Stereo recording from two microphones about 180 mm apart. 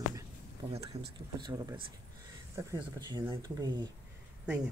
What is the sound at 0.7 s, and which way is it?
Speech, 35° right (ahead or behind).